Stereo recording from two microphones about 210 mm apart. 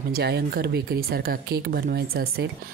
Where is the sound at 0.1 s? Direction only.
45° right (ahead or behind).